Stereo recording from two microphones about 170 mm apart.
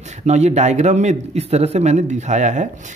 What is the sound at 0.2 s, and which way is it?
A man's voice, 40° right (ahead or behind).